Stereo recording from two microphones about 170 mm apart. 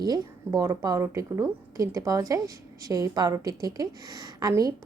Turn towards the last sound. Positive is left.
turn(degrees=-20)  # may be behind; listen again after turning